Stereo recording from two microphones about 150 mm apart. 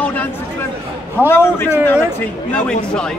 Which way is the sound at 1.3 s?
15° left (ahead or behind).